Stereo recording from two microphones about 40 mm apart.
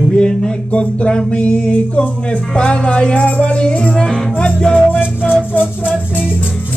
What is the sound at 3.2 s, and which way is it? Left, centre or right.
Speech, left.